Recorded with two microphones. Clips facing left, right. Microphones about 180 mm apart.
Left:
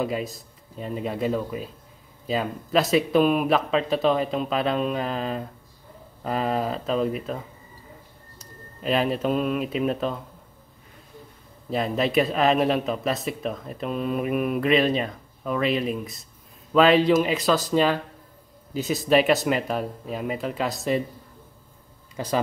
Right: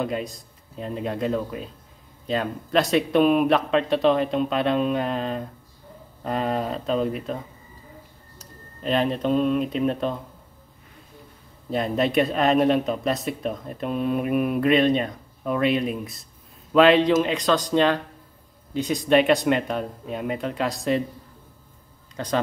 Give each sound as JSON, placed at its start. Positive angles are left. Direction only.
{"t": 0.0, "sound": "speech", "side_deg": 5}
{"t": 8.8, "sound": "speech", "side_deg": 5}
{"t": 11.7, "sound": "speech", "side_deg": 0}
{"t": 22.1, "sound": "speech", "side_deg": 5}